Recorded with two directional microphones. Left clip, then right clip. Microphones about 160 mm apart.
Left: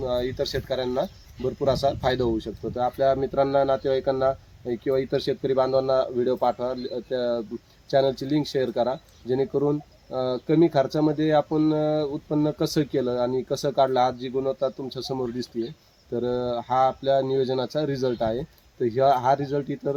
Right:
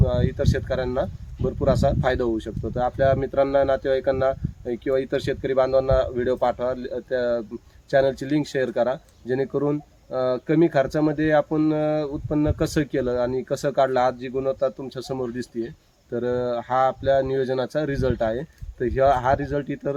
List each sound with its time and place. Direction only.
0.0 s speech: 5° right (ahead or behind)
6.1 s speech: 35° right (ahead or behind)
6.5 s speech: 5° right (ahead or behind)